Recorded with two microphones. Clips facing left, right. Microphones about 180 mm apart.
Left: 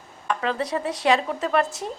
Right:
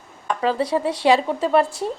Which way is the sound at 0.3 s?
30° right (ahead or behind).